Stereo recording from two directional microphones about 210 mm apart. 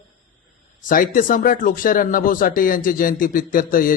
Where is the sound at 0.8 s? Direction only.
40° left (ahead or behind).